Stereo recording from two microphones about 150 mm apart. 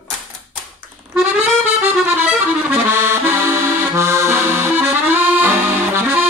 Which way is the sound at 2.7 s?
15° right (ahead or behind).